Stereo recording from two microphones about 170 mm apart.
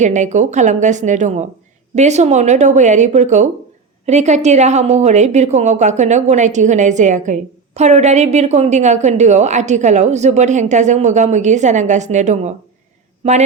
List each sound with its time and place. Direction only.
0.0 s a woman's voice: 45° right (ahead or behind)